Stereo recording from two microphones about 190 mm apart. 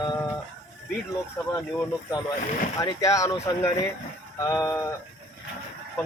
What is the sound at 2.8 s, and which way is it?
Speech, 15° left (ahead or behind).